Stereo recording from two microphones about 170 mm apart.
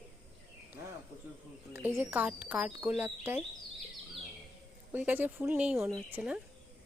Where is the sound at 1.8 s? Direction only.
15° right (ahead or behind).